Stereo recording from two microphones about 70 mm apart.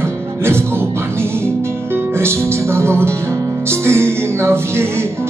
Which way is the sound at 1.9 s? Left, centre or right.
Right.